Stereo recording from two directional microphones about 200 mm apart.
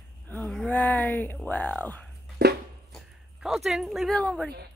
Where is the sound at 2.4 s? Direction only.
55° right (ahead or behind).